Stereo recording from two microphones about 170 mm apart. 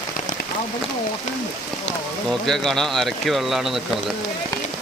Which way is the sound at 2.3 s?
Centre (ahead or behind).